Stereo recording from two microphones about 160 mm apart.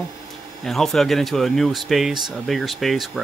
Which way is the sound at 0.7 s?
Centre (ahead or behind).